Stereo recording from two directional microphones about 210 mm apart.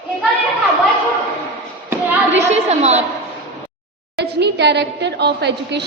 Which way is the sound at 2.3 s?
30° right (ahead or behind).